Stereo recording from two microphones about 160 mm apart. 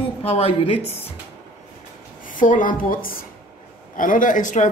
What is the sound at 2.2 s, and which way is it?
A woman's voice, 55° left (ahead or behind).